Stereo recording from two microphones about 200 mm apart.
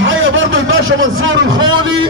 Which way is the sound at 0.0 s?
70° right (ahead or behind).